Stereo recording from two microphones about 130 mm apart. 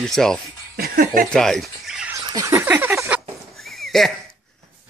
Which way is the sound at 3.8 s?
Centre (ahead or behind).